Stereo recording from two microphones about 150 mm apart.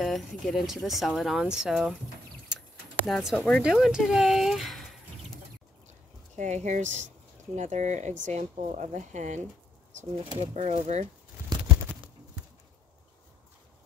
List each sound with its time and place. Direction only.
0.0 s speech: centre (ahead or behind)
3.1 s speech: centre (ahead or behind)
6.3 s speech: 50° right (ahead or behind)
10.4 s speech: 50° right (ahead or behind)